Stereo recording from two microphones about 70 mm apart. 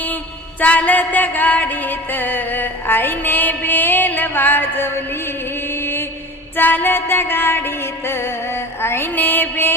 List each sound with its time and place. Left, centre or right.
0.6 s music: left